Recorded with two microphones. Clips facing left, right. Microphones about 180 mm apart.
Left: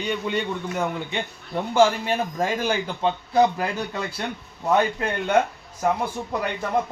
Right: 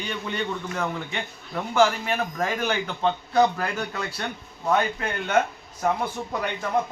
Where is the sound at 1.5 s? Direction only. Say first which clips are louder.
Left 2 dB; 30° left (ahead or behind).